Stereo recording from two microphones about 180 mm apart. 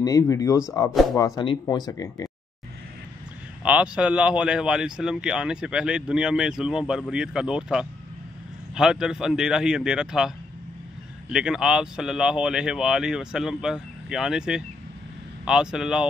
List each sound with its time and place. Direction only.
0.0 s speech: 20° left (ahead or behind)
3.6 s a man's voice: 5° right (ahead or behind)